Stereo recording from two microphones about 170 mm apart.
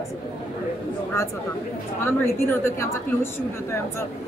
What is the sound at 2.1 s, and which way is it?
A woman's voice, 15° left (ahead or behind).